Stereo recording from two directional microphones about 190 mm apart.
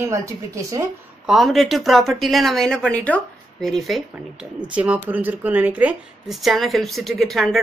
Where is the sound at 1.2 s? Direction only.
Centre (ahead or behind).